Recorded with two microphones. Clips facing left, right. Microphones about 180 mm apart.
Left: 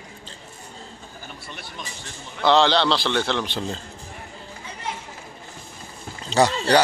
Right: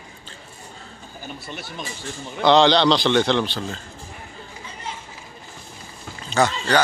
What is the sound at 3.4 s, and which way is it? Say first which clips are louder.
Speech: left 1 dB; 25° left (ahead or behind).